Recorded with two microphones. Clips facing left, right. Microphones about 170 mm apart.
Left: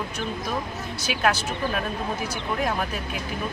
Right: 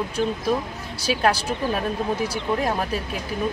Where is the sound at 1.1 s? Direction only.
35° right (ahead or behind).